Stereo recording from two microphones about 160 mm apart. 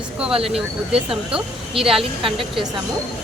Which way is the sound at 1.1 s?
5° right (ahead or behind).